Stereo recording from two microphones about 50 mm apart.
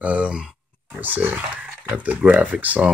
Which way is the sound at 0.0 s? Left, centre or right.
Right.